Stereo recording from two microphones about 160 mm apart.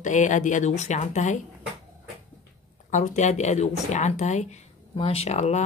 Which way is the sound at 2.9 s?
50° left (ahead or behind).